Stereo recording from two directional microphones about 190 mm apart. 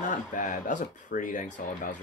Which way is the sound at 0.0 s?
40° left (ahead or behind).